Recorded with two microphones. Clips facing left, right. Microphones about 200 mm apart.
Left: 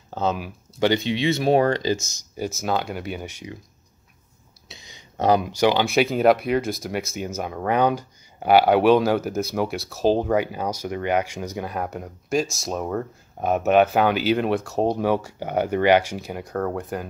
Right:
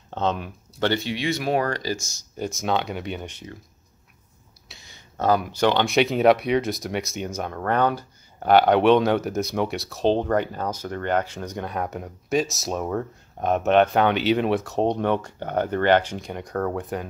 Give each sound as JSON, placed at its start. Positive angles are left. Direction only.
{"t": 0.1, "sound": "speech", "side_deg": 5}
{"t": 2.3, "sound": "speech", "side_deg": 5}
{"t": 4.6, "sound": "speech", "side_deg": 20}